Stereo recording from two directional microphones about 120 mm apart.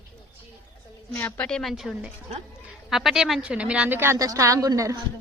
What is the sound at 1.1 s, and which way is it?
A woman's voice, 15° left (ahead or behind).